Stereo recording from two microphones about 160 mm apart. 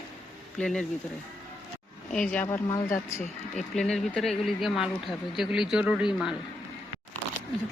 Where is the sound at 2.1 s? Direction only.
5° left (ahead or behind).